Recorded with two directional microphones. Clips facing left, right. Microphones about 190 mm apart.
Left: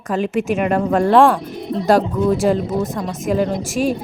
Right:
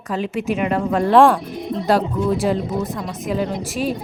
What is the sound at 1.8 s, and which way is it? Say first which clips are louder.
Speech: left 3 dB; 45° left (ahead or behind).